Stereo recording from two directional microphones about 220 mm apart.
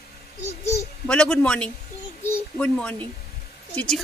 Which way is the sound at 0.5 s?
15° left (ahead or behind).